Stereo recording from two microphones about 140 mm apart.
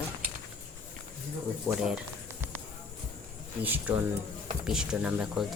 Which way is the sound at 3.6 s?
10° right (ahead or behind).